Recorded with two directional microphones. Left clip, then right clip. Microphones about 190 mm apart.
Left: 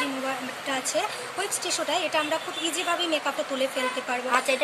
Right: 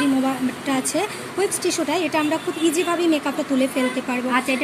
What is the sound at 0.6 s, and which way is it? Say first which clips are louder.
Speech: right 3 dB; 20° right (ahead or behind).